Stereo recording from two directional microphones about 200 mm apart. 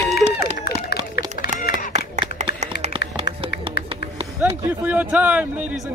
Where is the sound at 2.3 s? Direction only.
35° right (ahead or behind).